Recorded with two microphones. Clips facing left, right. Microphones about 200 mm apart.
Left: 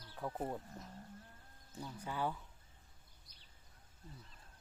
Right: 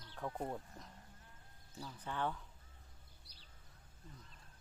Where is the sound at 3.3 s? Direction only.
35° right (ahead or behind).